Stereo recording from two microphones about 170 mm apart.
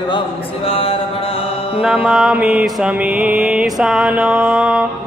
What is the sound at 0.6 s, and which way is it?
Mantra, 35° left (ahead or behind).